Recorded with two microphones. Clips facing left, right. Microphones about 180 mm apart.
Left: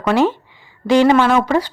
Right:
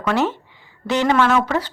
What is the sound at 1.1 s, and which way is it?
Speech, 25° left (ahead or behind).